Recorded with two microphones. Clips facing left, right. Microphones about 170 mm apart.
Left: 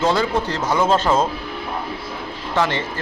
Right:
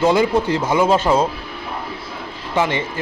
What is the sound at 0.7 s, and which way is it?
Speech, 5° right (ahead or behind).